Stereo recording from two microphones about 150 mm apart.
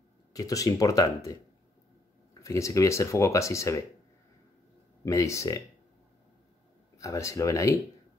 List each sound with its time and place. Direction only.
0.3 s speech: 20° left (ahead or behind)
5.0 s speech: 20° left (ahead or behind)
7.0 s speech: 20° left (ahead or behind)